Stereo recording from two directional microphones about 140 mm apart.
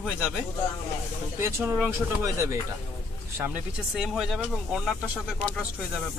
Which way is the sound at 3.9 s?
Centre (ahead or behind).